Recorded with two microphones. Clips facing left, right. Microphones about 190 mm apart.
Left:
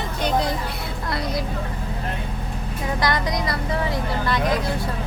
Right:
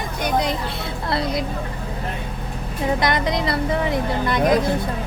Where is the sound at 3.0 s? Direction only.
25° right (ahead or behind).